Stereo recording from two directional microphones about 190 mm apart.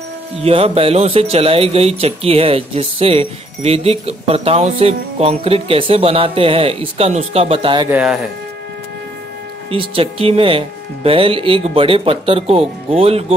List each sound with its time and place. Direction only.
0.4 s speech: 30° right (ahead or behind)
7.9 s speech: 5° right (ahead or behind)
9.7 s speech: 30° right (ahead or behind)